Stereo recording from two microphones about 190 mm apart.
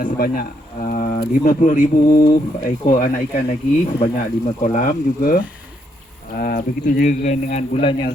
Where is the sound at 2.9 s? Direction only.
40° left (ahead or behind).